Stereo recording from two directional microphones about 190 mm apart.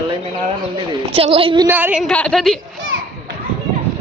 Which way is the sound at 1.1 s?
30° right (ahead or behind).